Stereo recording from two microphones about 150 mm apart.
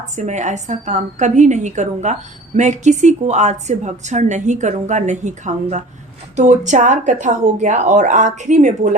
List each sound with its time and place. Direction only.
0.2 s a woman's voice: 55° right (ahead or behind)